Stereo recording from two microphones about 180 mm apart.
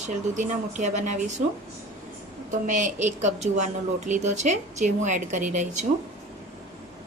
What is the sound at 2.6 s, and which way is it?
A woman's voice, 45° right (ahead or behind).